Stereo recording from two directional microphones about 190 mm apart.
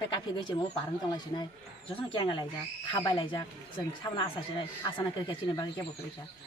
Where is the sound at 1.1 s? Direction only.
25° left (ahead or behind).